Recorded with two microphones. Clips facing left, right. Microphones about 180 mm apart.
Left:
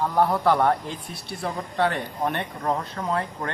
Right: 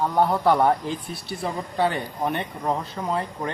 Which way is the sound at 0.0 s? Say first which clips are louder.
Right 1 dB; centre (ahead or behind).